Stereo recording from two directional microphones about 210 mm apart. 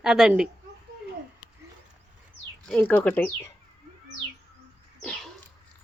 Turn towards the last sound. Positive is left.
turn(degrees=0)  # may be behind; listen again after turning